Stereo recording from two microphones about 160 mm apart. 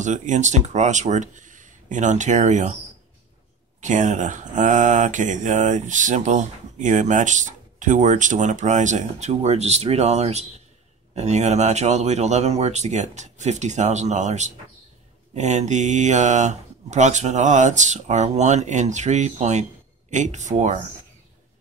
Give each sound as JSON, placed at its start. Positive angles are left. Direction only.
{"t": 0.0, "sound": "speech", "side_deg": -50}
{"t": 3.8, "sound": "speech", "side_deg": -50}